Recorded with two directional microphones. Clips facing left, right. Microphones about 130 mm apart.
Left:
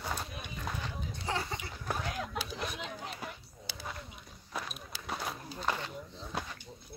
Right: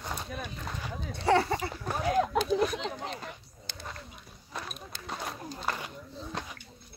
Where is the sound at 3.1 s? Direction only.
5° left (ahead or behind).